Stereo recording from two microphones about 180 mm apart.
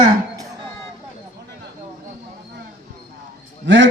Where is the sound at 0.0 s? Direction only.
25° right (ahead or behind).